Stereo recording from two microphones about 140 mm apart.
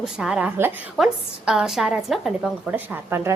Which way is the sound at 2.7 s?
15° right (ahead or behind).